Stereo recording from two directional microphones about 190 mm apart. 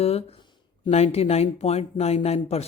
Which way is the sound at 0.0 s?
30° left (ahead or behind).